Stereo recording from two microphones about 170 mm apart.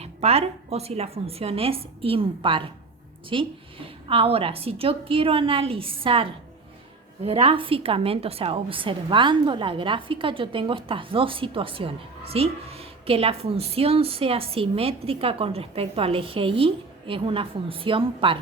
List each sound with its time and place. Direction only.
0.0 s a woman's voice: 40° right (ahead or behind)